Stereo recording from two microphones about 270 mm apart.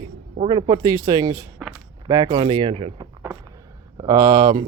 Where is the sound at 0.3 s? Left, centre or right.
Centre.